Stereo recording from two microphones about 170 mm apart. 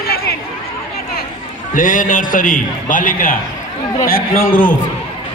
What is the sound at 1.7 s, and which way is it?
A man's voice, 50° left (ahead or behind).